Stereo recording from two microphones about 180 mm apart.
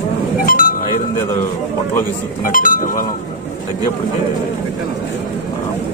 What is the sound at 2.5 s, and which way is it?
Speech, 50° left (ahead or behind).